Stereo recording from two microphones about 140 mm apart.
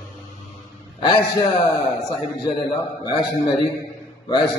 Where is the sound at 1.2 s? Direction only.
25° left (ahead or behind).